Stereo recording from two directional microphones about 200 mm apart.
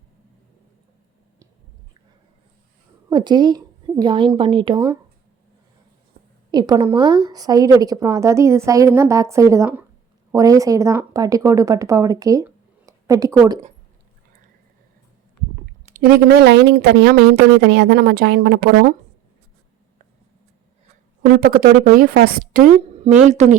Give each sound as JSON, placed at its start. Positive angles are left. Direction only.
{"t": 3.1, "sound": "a woman's voice", "side_deg": -20}
{"t": 6.2, "sound": "a sound", "side_deg": -45}
{"t": 6.5, "sound": "a woman's voice", "side_deg": -20}
{"t": 16.0, "sound": "speech", "side_deg": -50}
{"t": 21.2, "sound": "a woman's voice", "side_deg": -45}